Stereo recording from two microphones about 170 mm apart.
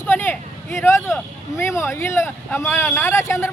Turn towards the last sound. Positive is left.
turn(degrees=15)  # may be behind; listen again after turning